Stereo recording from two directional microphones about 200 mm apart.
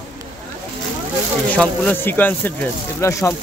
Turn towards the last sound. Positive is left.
turn(degrees=10)  # may be behind; listen again after turning